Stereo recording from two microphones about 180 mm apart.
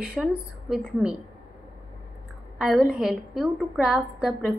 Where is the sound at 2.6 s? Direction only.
5° right (ahead or behind).